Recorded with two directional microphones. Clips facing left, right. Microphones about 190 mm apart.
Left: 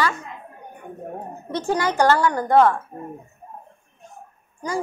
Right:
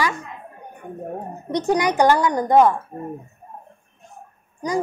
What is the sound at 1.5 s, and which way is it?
A child's voice, 20° right (ahead or behind).